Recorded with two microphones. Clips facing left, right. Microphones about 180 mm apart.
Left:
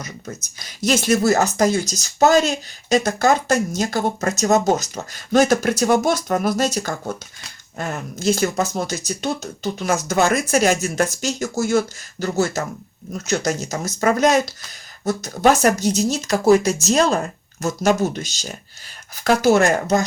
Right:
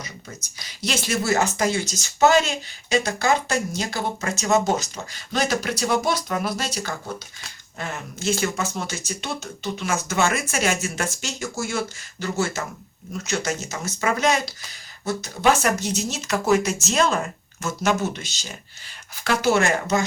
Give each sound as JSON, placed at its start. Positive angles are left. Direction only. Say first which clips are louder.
{"t": 0.8, "sound": "speech", "louder": "left 8 dB", "side_deg": 45}